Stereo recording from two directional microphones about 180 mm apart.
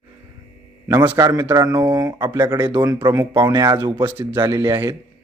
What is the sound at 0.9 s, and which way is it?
A man's voice, 10° right (ahead or behind).